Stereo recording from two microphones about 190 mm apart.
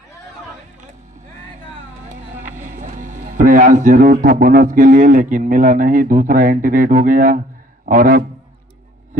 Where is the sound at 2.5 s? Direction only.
40° right (ahead or behind).